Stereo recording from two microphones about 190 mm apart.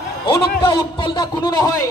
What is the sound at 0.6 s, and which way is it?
Speech, 25° left (ahead or behind).